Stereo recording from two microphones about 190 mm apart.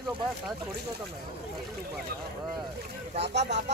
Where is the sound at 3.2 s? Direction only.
65° right (ahead or behind).